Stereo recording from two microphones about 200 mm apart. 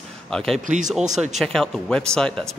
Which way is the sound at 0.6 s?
40° right (ahead or behind).